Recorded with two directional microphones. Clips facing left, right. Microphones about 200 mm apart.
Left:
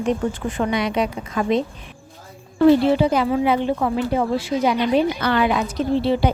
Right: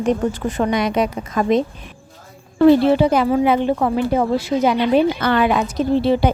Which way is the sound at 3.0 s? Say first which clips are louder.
Right 3 dB; 50° right (ahead or behind).